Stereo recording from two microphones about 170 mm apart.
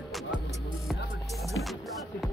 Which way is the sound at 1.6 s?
90° left.